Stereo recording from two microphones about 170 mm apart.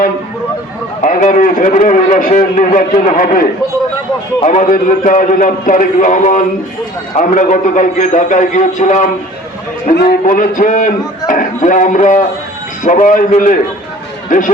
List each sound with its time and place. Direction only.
1.0 s a man's voice: 50° left (ahead or behind)
9.9 s a man's voice: 65° left (ahead or behind); by 14.5 s 50° left (ahead or behind)